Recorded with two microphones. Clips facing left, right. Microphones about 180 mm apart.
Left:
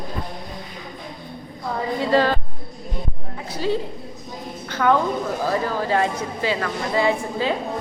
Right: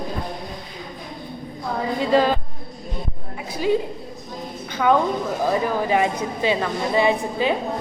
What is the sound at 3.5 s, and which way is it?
A woman's voice, 15° right (ahead or behind).